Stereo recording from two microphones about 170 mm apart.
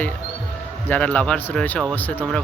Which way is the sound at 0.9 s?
10° left (ahead or behind).